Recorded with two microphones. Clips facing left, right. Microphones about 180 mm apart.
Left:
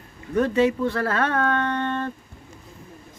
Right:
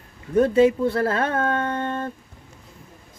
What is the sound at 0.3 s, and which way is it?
Speech, 35° right (ahead or behind).